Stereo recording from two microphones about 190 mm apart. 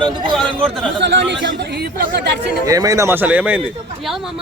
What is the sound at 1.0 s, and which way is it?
Speech, 65° right (ahead or behind).